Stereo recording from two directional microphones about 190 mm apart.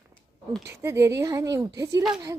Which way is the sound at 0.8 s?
15° right (ahead or behind).